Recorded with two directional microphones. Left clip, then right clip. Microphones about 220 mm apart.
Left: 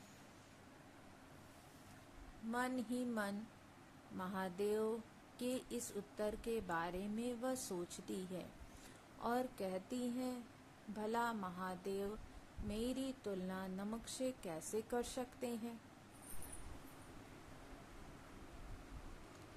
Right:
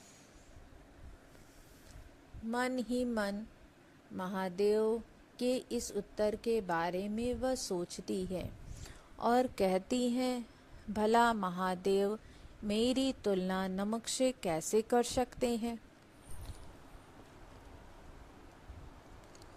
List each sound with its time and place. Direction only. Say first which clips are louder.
2.5 s a woman's voice: right 7 dB; 30° right (ahead or behind)